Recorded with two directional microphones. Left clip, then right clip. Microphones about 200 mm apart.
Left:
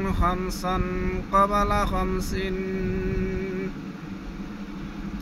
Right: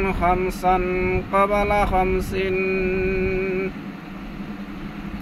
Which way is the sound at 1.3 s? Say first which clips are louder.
Right 1 dB; 15° left (ahead or behind).